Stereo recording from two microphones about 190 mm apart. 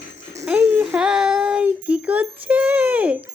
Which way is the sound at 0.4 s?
5° right (ahead or behind).